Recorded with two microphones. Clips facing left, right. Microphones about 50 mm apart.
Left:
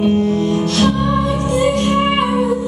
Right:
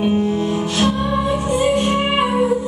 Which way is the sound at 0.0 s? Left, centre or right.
Centre.